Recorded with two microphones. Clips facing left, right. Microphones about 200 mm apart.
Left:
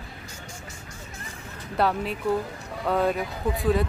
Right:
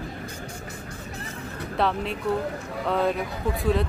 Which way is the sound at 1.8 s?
5° left (ahead or behind).